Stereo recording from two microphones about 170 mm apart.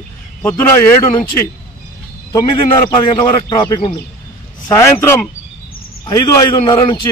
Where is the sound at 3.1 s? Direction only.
25° left (ahead or behind).